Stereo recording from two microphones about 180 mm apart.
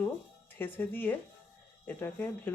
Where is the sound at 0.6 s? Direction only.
10° left (ahead or behind).